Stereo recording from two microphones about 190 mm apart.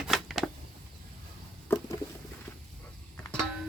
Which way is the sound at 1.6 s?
15° left (ahead or behind).